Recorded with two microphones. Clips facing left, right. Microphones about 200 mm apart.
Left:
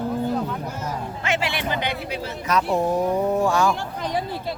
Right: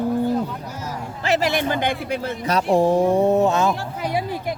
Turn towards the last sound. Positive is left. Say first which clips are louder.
# right 2 dB
turn(degrees=-10)  # may be behind; listen again after turning